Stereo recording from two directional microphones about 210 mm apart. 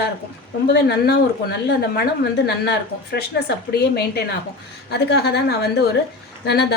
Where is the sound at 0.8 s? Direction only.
50° left (ahead or behind).